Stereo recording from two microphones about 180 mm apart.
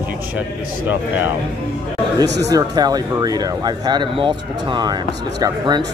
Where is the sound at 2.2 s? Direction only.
70° right (ahead or behind).